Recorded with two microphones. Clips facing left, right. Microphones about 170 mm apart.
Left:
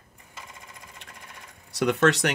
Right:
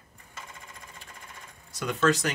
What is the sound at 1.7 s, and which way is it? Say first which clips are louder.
Speech: left 4 dB; 70° left (ahead or behind).